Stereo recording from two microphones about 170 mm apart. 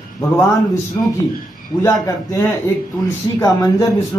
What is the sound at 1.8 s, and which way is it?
Speech, 15° left (ahead or behind).